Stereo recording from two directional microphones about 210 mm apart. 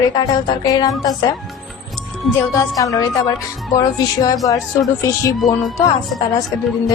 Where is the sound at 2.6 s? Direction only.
15° left (ahead or behind).